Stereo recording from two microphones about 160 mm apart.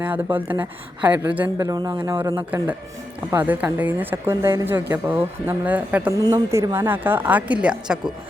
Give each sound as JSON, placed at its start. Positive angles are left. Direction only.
{"t": 0.0, "sound": "speech", "side_deg": -10}
{"t": 1.6, "sound": "speech", "side_deg": -20}
{"t": 6.1, "sound": "speech", "side_deg": -20}